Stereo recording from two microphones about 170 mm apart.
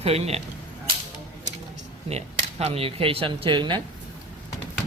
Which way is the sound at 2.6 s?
35° right (ahead or behind).